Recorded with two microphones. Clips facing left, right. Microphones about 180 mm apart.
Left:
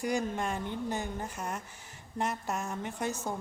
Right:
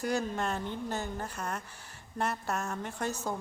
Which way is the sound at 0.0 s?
15° left (ahead or behind).